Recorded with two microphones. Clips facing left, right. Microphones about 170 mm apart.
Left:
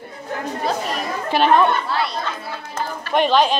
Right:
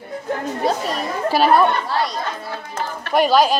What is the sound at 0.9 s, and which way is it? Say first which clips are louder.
Chatter: right 2 dB; 40° right (ahead or behind).